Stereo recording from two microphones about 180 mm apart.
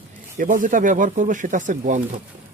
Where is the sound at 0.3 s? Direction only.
50° right (ahead or behind).